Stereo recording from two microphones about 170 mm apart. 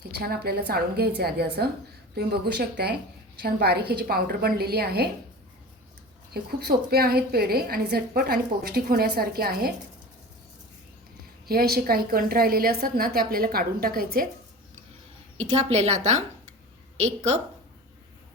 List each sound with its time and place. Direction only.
0.0 s a woman's voice: 65° right (ahead or behind)
6.3 s a woman's voice: 65° right (ahead or behind)
11.4 s a woman's voice: 65° right (ahead or behind)
15.4 s a woman's voice: 40° right (ahead or behind)